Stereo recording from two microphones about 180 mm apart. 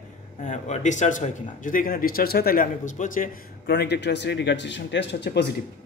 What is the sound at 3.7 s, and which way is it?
Speech, 65° left (ahead or behind).